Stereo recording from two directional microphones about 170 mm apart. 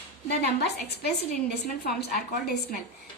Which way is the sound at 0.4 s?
70° left (ahead or behind).